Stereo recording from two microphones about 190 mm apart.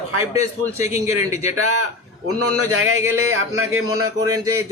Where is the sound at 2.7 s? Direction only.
90° right.